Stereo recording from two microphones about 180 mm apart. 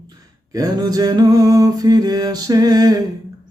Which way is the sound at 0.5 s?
20° right (ahead or behind).